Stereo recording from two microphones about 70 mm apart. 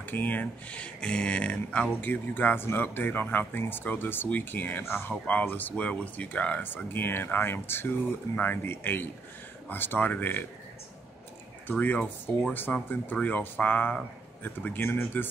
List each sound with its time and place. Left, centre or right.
0.0 s speech: left
11.6 s speech: left